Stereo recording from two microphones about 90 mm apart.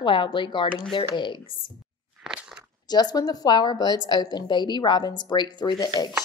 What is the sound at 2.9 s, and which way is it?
A woman's voice, 50° left (ahead or behind).